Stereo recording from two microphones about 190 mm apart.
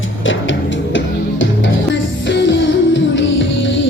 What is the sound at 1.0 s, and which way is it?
Music, 80° left.